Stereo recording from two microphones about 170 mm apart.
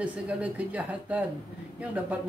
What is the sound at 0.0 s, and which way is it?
Speech, 10° right (ahead or behind).